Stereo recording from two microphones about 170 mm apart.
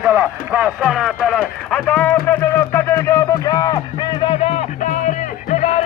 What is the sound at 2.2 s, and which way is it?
Music, 10° left (ahead or behind).